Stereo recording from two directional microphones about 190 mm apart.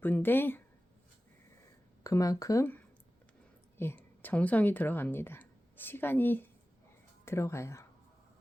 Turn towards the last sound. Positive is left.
turn(degrees=15)  # may be behind; listen again after turning